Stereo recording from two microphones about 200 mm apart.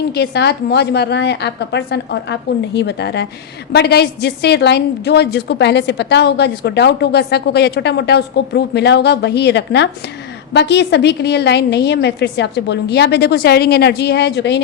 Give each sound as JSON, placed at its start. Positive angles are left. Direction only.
{"t": 0.1, "sound": "a woman's voice", "side_deg": 55}